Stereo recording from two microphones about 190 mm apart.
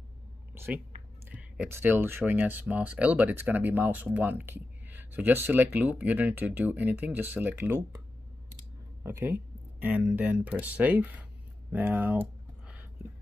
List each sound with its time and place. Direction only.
1.3 s speech: 10° right (ahead or behind)
9.0 s speech: 10° right (ahead or behind)
11.7 s a sound: 10° right (ahead or behind)